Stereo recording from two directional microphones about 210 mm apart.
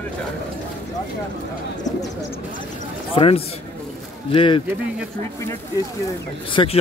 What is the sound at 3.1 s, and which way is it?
Speech, 25° left (ahead or behind).